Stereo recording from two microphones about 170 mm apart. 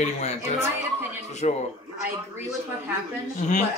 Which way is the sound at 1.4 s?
40° left (ahead or behind).